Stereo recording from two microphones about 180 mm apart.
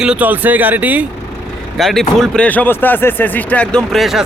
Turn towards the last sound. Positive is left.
turn(degrees=0)  # may be behind; listen again after turning